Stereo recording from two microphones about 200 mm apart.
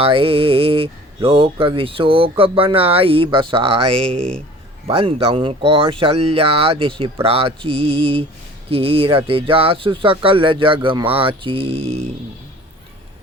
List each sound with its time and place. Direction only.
0.0 s speech: 25° right (ahead or behind)